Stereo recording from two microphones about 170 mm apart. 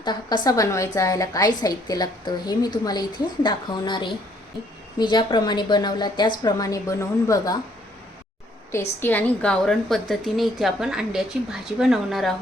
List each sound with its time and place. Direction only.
0.0 s a woman's voice: 25° left (ahead or behind)
8.7 s a woman's voice: 15° left (ahead or behind)